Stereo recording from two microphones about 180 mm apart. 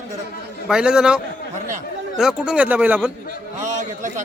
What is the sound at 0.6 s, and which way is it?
A man's voice, 5° right (ahead or behind).